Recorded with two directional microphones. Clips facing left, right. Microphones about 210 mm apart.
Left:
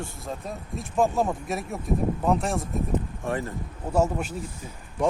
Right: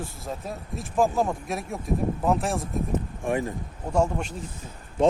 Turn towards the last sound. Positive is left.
turn(degrees=-25)  # may be behind; listen again after turning